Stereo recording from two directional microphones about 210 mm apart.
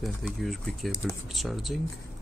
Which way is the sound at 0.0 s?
Centre (ahead or behind).